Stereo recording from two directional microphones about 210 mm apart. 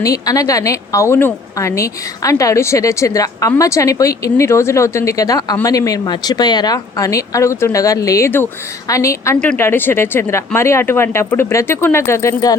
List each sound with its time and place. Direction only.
0.0 s a woman's voice: 15° left (ahead or behind)